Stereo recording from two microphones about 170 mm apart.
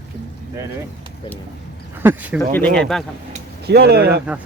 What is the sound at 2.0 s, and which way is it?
Speech, 10° right (ahead or behind).